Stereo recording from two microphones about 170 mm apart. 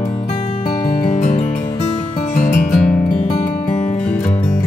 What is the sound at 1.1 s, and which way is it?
Music, 45° left (ahead or behind).